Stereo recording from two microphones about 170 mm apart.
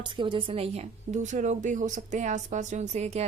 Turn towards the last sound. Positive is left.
turn(degrees=-40)  # may be behind; listen again after turning